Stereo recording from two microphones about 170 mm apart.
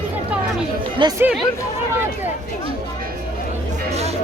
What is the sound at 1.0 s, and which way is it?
Speech, 25° right (ahead or behind).